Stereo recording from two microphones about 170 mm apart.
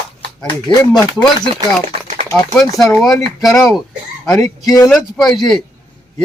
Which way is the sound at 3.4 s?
Centre (ahead or behind).